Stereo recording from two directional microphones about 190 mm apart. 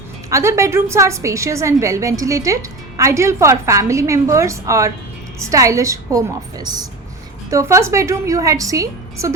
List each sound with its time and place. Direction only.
0.3 s a woman's voice: 15° right (ahead or behind)